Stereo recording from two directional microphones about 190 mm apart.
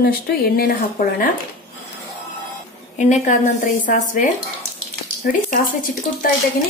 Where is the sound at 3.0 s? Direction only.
40° left (ahead or behind).